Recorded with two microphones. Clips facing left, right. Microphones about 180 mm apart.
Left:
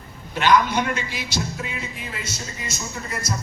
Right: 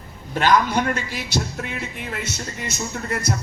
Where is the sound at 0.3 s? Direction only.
45° right (ahead or behind).